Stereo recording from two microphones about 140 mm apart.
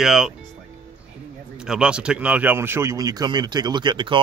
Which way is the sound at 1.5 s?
5° right (ahead or behind).